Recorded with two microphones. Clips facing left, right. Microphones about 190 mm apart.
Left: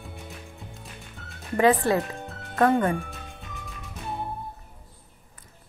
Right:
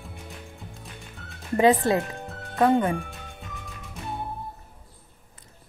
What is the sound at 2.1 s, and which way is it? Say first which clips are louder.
Music: even; centre (ahead or behind).